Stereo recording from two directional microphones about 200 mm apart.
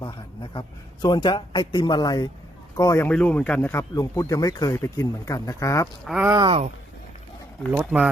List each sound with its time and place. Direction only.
0.0 s speech: 25° left (ahead or behind)
6.1 s speech: 5° right (ahead or behind)
6.3 s speech: 20° right (ahead or behind)
7.7 s speech: 10° right (ahead or behind)